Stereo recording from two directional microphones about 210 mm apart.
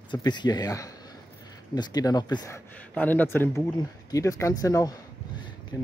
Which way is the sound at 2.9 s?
10° left (ahead or behind).